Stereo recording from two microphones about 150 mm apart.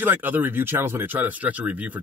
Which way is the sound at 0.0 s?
15° right (ahead or behind).